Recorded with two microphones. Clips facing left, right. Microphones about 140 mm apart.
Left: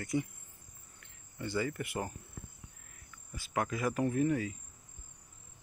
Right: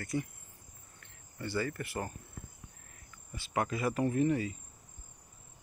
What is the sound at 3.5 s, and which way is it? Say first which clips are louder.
Cricket: right 1 dB; centre (ahead or behind).